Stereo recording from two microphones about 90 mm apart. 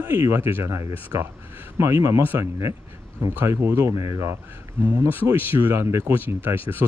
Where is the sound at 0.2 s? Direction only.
30° right (ahead or behind).